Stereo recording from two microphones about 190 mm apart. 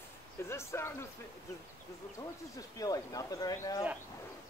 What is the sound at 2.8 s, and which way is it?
Speech, 20° left (ahead or behind).